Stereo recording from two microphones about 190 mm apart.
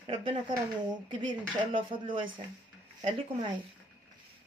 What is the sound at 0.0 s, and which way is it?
Speech, 25° right (ahead or behind).